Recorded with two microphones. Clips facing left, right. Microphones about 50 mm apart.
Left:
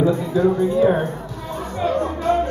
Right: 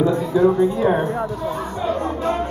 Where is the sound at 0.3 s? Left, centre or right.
Centre.